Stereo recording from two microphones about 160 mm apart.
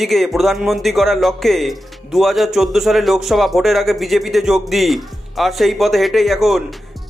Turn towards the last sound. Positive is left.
turn(degrees=0)  # may be behind; listen again after turning